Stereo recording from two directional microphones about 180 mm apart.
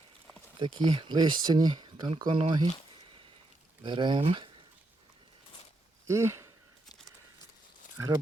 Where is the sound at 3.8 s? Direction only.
25° right (ahead or behind).